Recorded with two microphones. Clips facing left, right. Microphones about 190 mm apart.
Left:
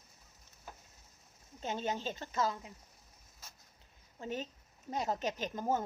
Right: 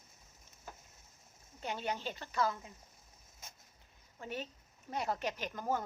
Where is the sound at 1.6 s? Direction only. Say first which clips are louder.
Left 2 dB; 20° left (ahead or behind).